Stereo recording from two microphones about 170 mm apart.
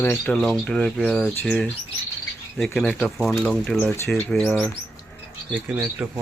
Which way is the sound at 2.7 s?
5° left (ahead or behind).